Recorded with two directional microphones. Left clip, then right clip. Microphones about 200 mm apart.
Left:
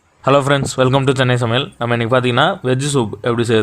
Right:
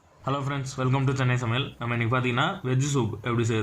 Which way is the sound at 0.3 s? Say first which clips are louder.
Left 17 dB; 45° left (ahead or behind).